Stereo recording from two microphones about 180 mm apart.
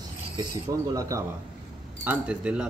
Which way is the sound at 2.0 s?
5° right (ahead or behind).